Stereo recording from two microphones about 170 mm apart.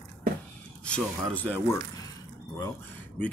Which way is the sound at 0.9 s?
10° left (ahead or behind).